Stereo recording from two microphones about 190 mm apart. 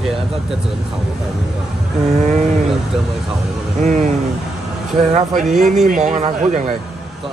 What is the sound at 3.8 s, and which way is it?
Speech, 40° right (ahead or behind).